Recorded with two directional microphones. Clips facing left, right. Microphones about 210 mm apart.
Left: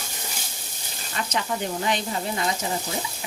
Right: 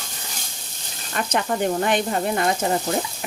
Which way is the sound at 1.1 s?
55° right (ahead or behind).